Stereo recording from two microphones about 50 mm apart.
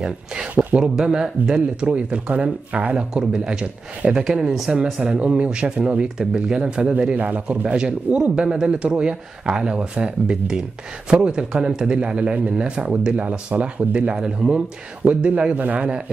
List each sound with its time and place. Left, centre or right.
0.0 s speech: centre
5.1 s speech: right
14.1 s speech: centre
15.0 s speech: right